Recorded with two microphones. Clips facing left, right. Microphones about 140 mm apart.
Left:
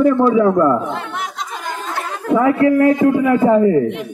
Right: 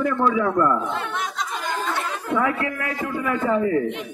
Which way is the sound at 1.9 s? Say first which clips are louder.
Left 10 dB; 30° left (ahead or behind).